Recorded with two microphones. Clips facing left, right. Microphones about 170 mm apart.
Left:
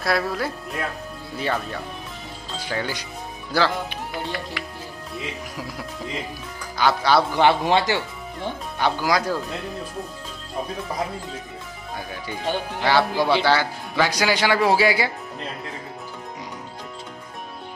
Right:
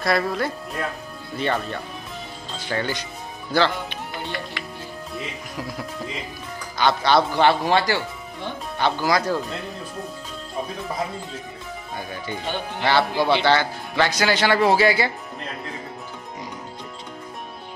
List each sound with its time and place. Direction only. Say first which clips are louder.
0.0 s speech: right 1 dB; centre (ahead or behind)
6.8 s a man's voice: even; 5° left (ahead or behind)
7.4 s a man's voice: even; 20° left (ahead or behind)
12.8 s a man's voice: even; 10° left (ahead or behind)